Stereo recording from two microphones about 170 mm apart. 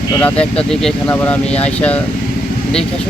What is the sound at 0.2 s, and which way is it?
Speech, 10° left (ahead or behind).